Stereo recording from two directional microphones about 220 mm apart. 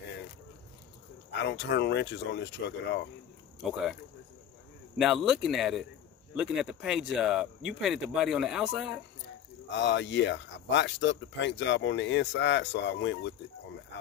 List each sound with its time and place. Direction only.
1.4 s speech: 50° left (ahead or behind)
4.9 s speech: centre (ahead or behind)
9.7 s speech: 55° left (ahead or behind)